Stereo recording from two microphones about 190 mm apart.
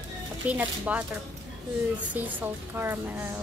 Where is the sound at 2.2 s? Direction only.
10° right (ahead or behind).